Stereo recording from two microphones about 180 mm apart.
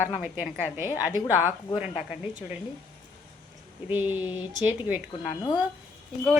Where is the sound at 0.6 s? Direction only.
10° right (ahead or behind).